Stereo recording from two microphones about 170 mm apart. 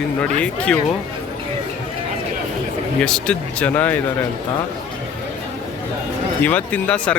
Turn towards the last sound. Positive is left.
turn(degrees=5)  # may be behind; listen again after turning